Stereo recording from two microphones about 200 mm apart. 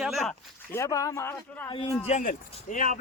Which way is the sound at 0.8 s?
15° left (ahead or behind).